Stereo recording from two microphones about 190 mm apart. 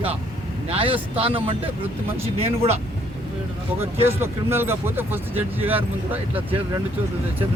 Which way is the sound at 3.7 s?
10° right (ahead or behind).